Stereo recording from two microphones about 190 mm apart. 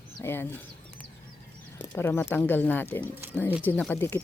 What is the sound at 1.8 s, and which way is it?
Speech, 10° left (ahead or behind).